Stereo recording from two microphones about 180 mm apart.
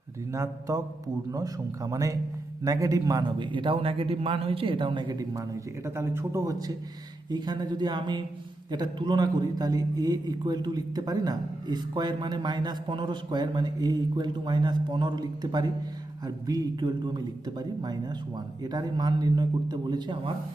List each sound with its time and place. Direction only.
0.3 s a man's voice: 15° right (ahead or behind)